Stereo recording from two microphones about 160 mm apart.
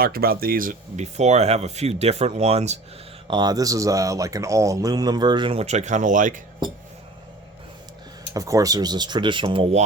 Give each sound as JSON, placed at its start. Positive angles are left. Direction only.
{"t": 0.0, "sound": "speech", "side_deg": -70}
{"t": 3.2, "sound": "speech", "side_deg": -25}
{"t": 6.6, "sound": "speech", "side_deg": -30}
{"t": 8.3, "sound": "speech", "side_deg": -20}